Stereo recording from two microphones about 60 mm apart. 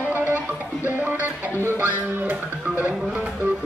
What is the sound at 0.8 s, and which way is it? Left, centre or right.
Music, right.